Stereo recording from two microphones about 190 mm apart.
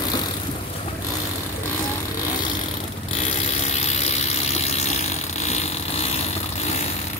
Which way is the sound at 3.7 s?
35° left (ahead or behind).